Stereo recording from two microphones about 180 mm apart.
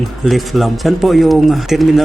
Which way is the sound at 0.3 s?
Centre (ahead or behind).